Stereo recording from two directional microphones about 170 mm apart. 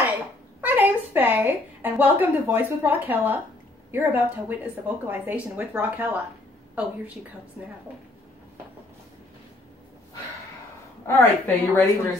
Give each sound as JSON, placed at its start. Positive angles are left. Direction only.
{"t": 0.0, "sound": "a woman's voice", "side_deg": -10}
{"t": 11.1, "sound": "a woman's voice", "side_deg": 15}